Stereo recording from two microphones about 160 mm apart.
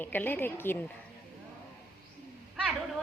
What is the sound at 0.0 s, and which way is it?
Speech, 10° left (ahead or behind).